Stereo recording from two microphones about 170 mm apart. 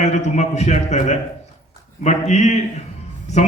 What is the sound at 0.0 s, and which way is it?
A man's voice, 45° left (ahead or behind).